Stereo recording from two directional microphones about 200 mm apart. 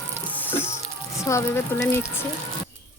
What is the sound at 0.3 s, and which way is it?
Music, 10° left (ahead or behind).